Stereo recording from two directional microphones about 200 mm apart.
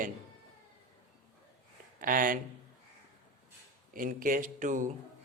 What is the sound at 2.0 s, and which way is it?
Speech, 45° right (ahead or behind).